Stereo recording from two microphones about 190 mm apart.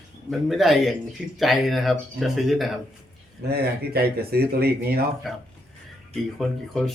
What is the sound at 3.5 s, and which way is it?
Speech, 55° right (ahead or behind).